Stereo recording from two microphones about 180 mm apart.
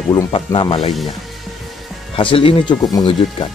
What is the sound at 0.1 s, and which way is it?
Speech, 25° left (ahead or behind).